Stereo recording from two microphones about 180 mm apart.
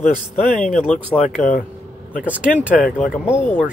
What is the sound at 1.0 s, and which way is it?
Speech, 5° right (ahead or behind).